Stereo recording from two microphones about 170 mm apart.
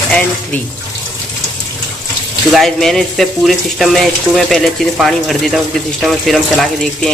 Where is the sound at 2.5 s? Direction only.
Centre (ahead or behind).